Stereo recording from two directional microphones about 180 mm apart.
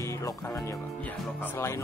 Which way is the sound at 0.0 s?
15° left (ahead or behind).